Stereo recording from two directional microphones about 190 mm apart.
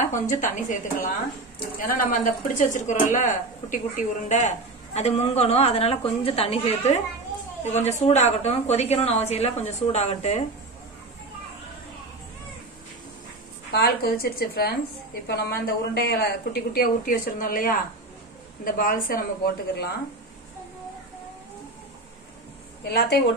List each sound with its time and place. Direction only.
0.0 s speech: 40° left (ahead or behind)
13.7 s speech: 55° left (ahead or behind)
22.8 s a woman's voice: 60° left (ahead or behind)